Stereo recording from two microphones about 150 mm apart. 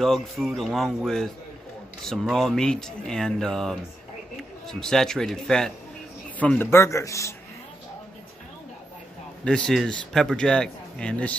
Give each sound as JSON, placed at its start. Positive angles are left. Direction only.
{"t": 0.0, "sound": "a man's voice", "side_deg": 0}
{"t": 9.4, "sound": "speech", "side_deg": 5}